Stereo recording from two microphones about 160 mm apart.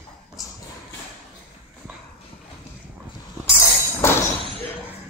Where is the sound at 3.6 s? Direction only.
15° left (ahead or behind).